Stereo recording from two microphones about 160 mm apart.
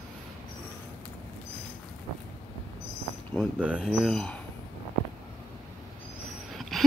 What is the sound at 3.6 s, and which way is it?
Speech, 5° right (ahead or behind).